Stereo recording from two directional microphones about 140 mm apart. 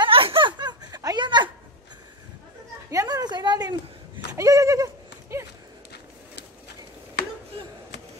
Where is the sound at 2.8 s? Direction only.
25° right (ahead or behind).